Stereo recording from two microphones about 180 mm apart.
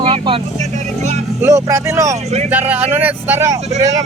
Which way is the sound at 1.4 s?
15° right (ahead or behind).